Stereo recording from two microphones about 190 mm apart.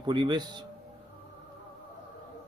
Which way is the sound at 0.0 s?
25° right (ahead or behind).